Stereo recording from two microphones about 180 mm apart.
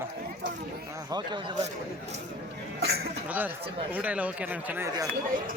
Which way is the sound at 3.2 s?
10° right (ahead or behind).